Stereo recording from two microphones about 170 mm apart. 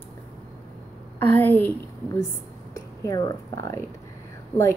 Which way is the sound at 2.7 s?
20° left (ahead or behind).